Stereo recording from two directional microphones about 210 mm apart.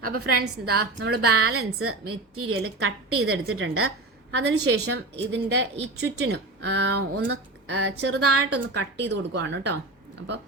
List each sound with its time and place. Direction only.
0.0 s a woman's voice: 45° right (ahead or behind)
1.3 s a woman's voice: 90° right
4.3 s speech: 60° right (ahead or behind); by 8.4 s 75° right (ahead or behind)
8.7 s speech: 55° right (ahead or behind)